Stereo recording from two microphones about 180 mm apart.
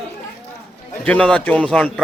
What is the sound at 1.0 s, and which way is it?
Speech, 5° left (ahead or behind).